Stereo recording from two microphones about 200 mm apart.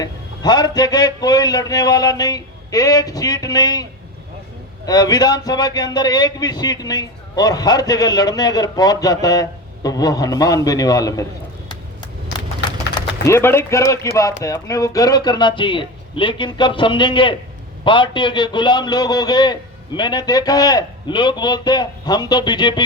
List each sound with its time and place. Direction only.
0.0 s a man's voice: 20° left (ahead or behind)
4.9 s a man's voice: 20° left (ahead or behind)
12.9 s a man's voice: 15° left (ahead or behind)